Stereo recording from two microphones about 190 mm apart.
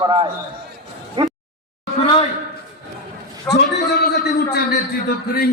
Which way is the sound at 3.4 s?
60° left (ahead or behind).